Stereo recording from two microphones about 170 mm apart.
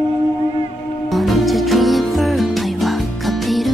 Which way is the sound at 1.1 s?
Centre (ahead or behind).